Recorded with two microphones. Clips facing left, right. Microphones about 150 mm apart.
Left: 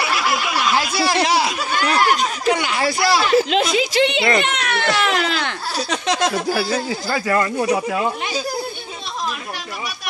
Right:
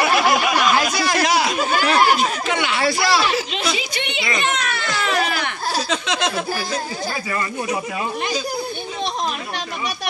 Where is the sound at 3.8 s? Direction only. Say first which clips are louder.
Left 9 dB; 90° left.